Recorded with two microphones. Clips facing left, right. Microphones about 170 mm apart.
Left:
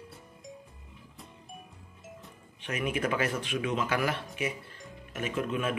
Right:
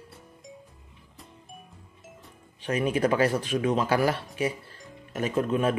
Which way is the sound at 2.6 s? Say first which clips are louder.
Right 6 dB; 35° right (ahead or behind).